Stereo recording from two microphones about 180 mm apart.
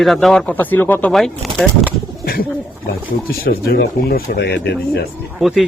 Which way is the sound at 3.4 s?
55° left (ahead or behind).